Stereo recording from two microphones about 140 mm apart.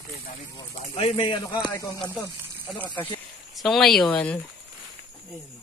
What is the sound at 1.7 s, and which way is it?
Speech, 25° left (ahead or behind).